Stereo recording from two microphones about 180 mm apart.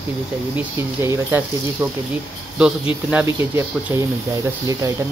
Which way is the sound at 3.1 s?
10° right (ahead or behind).